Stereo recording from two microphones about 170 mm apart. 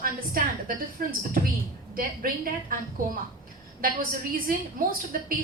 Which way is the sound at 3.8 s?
55° right (ahead or behind).